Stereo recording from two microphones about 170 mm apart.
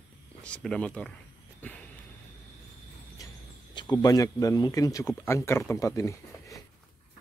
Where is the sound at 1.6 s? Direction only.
10° left (ahead or behind).